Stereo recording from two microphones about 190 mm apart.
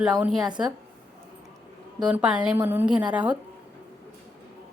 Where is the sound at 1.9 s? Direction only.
5° right (ahead or behind).